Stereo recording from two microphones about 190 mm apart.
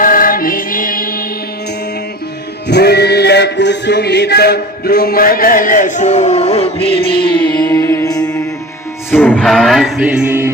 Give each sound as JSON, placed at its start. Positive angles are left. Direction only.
{"t": 0.0, "sound": "music", "side_deg": 50}
{"t": 2.6, "sound": "music", "side_deg": 60}
{"t": 7.2, "sound": "music", "side_deg": 20}
{"t": 9.1, "sound": "music", "side_deg": 10}